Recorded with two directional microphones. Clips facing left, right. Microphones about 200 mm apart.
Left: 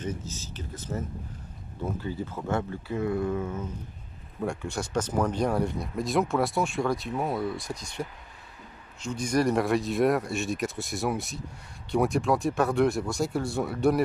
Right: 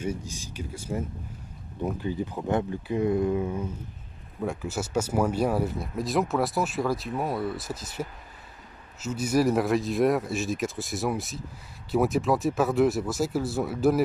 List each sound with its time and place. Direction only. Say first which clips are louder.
0.0 s speech: right 2 dB; 10° right (ahead or behind)
4.4 s speech: right 1 dB; 5° right (ahead or behind)